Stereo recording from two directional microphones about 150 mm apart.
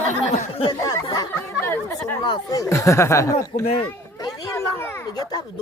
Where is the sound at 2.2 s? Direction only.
25° left (ahead or behind).